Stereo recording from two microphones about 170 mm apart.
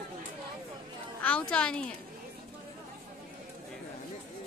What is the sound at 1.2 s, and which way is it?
Speech, 5° left (ahead or behind).